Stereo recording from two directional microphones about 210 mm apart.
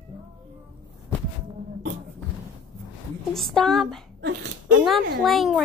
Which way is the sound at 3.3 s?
Centre (ahead or behind).